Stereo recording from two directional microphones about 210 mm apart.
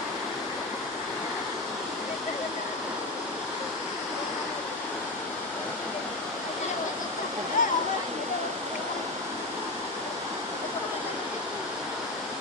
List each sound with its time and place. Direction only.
7.6 s waterfall: 40° left (ahead or behind)